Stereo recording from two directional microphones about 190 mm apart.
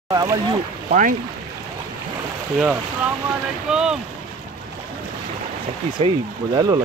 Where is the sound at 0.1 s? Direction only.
20° right (ahead or behind).